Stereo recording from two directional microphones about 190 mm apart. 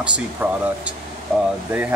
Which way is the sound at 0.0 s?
5° right (ahead or behind).